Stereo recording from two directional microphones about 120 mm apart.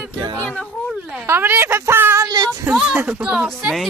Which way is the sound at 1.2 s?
20° right (ahead or behind).